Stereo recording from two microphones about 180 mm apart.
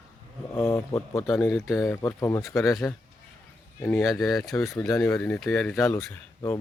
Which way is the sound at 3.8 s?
10° left (ahead or behind).